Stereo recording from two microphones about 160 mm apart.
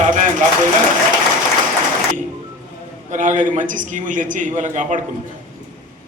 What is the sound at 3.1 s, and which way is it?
A man's voice, 50° right (ahead or behind).